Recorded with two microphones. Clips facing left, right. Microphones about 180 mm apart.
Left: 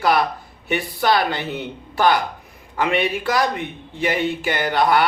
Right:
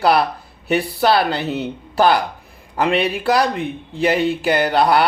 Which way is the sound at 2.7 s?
35° right (ahead or behind).